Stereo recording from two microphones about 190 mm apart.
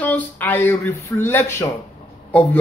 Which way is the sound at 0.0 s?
10° left (ahead or behind).